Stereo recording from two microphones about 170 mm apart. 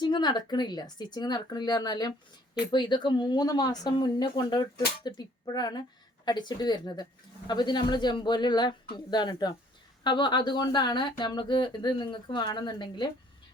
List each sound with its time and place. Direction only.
0.0 s speech: 25° left (ahead or behind)